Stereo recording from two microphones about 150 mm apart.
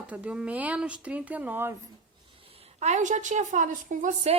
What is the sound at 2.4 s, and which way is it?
A woman's voice, 40° right (ahead or behind).